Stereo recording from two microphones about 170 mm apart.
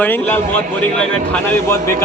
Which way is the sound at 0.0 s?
10° left (ahead or behind).